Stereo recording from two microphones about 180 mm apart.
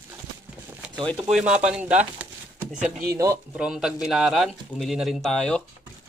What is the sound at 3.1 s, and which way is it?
Speech, 15° right (ahead or behind).